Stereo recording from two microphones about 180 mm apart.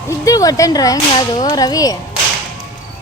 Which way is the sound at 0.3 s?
20° left (ahead or behind).